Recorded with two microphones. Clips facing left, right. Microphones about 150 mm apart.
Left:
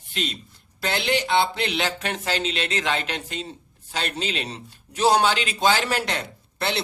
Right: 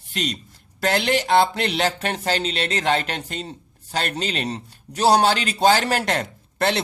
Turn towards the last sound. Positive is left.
turn(degrees=-45)  # may be behind; listen again after turning